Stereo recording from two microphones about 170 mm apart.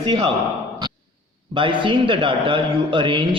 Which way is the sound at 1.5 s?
30° right (ahead or behind).